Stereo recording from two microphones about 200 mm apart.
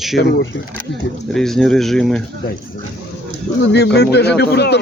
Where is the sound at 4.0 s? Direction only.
55° left (ahead or behind).